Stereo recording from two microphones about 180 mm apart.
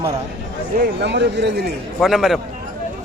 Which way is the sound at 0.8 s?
70° right (ahead or behind).